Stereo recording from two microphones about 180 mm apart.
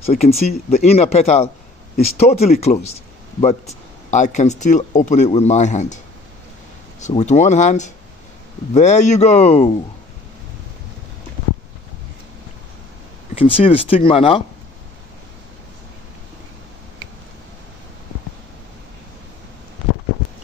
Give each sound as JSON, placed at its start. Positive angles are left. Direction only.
{"t": 0.0, "sound": "speech", "side_deg": 35}
{"t": 7.0, "sound": "speech", "side_deg": 40}
{"t": 13.3, "sound": "speech", "side_deg": 30}